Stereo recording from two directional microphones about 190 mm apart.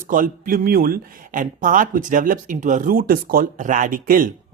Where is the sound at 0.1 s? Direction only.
45° right (ahead or behind).